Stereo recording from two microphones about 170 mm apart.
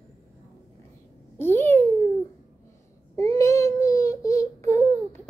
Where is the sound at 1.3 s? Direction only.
15° left (ahead or behind).